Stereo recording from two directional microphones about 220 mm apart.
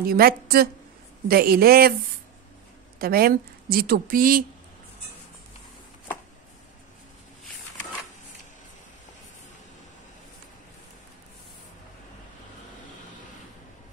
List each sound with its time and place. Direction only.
0.0 s a woman's voice: 45° right (ahead or behind)
3.0 s a woman's voice: 45° right (ahead or behind)